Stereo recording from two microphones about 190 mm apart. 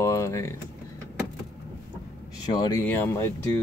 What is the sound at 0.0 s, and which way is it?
Typing, 15° left (ahead or behind).